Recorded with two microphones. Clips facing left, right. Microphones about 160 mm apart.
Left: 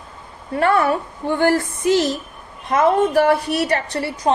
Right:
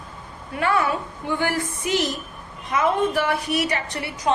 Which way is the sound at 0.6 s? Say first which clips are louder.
Left 5 dB; 50° left (ahead or behind).